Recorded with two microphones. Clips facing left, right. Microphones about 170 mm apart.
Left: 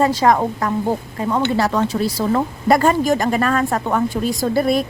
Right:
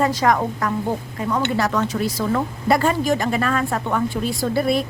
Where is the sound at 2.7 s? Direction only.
45° left (ahead or behind).